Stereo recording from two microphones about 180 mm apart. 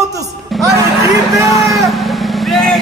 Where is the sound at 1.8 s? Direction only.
Centre (ahead or behind).